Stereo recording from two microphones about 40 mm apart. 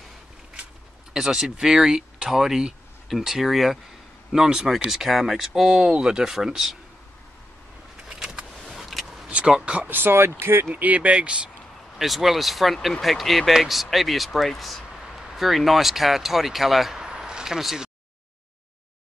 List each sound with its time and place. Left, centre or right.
1.1 s speech: centre
8.1 s vehicle: centre
9.8 s speech: right
10.7 s speech: right
12.0 s speech: centre
17.0 s a sound: centre
17.6 s speech: centre